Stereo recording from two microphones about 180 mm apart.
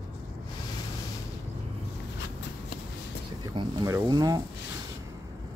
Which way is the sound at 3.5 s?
20° right (ahead or behind).